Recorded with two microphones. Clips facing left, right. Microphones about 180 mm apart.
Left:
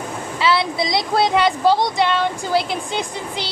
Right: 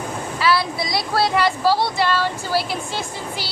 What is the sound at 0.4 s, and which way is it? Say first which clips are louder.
Speech: left 2 dB; 25° left (ahead or behind).